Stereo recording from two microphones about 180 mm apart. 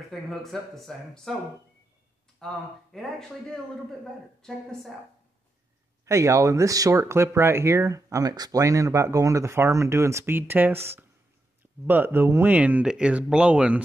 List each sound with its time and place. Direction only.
0.1 s speech: centre (ahead or behind)
2.4 s speech: centre (ahead or behind)
6.0 s speech: 15° right (ahead or behind)